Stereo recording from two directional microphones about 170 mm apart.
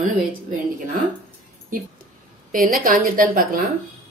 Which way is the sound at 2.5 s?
55° right (ahead or behind).